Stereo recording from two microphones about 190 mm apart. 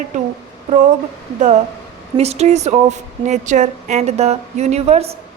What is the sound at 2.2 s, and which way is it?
A woman's voice, 35° right (ahead or behind).